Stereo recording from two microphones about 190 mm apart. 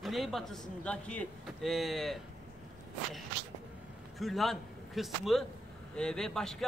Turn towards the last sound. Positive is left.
turn(degrees=5)  # may be behind; listen again after turning